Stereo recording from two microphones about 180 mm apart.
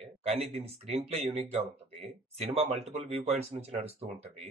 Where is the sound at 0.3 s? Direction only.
35° right (ahead or behind).